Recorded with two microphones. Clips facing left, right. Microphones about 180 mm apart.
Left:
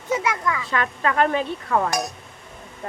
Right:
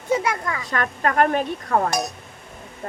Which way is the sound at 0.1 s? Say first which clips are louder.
Right 1 dB; 35° right (ahead or behind).